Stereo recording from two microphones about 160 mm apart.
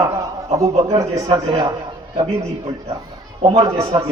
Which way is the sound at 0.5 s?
20° right (ahead or behind).